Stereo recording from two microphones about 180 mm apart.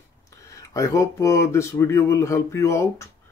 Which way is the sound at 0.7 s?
15° left (ahead or behind).